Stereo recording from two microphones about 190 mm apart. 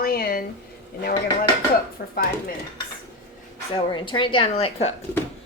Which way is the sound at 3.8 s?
25° left (ahead or behind).